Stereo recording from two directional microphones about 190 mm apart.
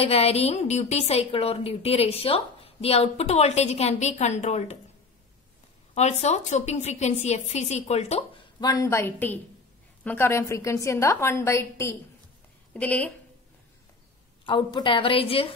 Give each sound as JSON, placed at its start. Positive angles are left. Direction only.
{"t": 0.0, "sound": "a woman's voice", "side_deg": 30}
{"t": 5.9, "sound": "a woman's voice", "side_deg": 35}
{"t": 8.5, "sound": "a woman's voice", "side_deg": 20}
{"t": 14.4, "sound": "a woman's voice", "side_deg": 25}